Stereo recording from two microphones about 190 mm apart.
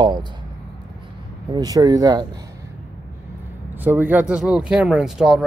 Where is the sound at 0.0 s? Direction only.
25° right (ahead or behind).